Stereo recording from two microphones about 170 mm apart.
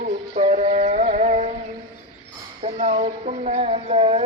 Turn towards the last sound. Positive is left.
turn(degrees=-35)  # may be behind; listen again after turning